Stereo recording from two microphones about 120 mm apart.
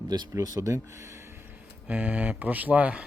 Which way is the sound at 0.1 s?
30° right (ahead or behind).